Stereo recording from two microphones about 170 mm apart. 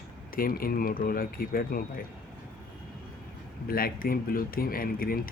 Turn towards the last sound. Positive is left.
turn(degrees=60)  # may be behind; listen again after turning